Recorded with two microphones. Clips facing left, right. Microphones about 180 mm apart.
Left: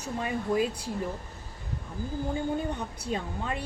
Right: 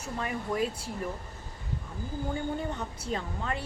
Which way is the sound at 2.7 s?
15° left (ahead or behind).